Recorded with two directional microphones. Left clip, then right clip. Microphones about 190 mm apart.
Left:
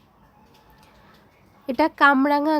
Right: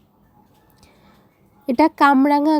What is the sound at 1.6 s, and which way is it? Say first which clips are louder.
Speech: right 3 dB; 15° right (ahead or behind).